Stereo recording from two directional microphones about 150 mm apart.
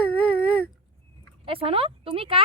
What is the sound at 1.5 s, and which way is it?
Speech, 40° right (ahead or behind).